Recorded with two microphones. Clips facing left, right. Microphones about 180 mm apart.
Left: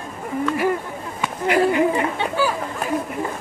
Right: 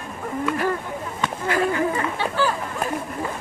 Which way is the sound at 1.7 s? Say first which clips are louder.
Left 4 dB; 20° left (ahead or behind).